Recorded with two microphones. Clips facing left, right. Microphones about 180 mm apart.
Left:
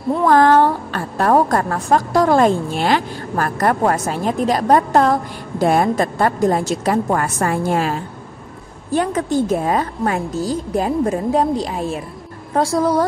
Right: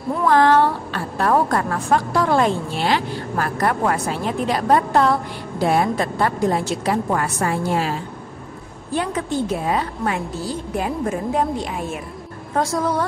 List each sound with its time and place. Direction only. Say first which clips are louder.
0.3 s a woman's voice: left 2 dB; 45° left (ahead or behind)
8.9 s a woman's voice: left 5 dB; 45° left (ahead or behind)